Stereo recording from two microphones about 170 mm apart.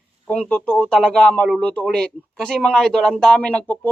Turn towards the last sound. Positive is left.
turn(degrees=10)  # may be behind; listen again after turning